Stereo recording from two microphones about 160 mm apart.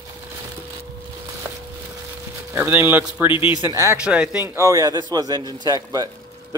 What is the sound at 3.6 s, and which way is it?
Speech, 15° right (ahead or behind).